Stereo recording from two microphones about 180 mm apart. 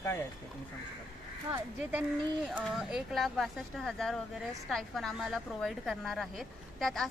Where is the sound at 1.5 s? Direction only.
10° right (ahead or behind).